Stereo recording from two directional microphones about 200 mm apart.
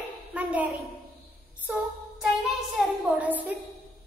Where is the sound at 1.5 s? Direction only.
5° right (ahead or behind).